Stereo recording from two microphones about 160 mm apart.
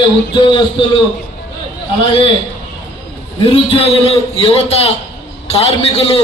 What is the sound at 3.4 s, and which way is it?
A man's voice, 35° left (ahead or behind).